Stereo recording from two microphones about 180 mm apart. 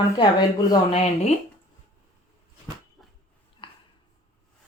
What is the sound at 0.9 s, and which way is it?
Speech, 40° left (ahead or behind).